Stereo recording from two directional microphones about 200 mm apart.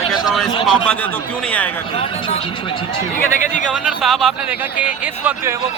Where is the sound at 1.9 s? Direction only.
25° left (ahead or behind).